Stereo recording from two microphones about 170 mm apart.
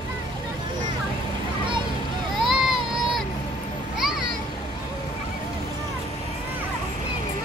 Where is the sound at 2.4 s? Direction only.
Centre (ahead or behind).